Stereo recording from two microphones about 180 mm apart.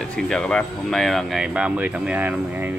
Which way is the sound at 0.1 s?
5° left (ahead or behind).